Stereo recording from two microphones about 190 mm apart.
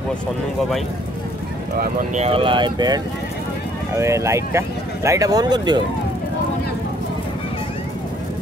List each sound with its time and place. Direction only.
2.1 s speech: 30° right (ahead or behind)